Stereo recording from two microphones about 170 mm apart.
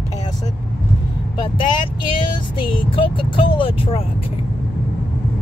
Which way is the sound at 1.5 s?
25° left (ahead or behind).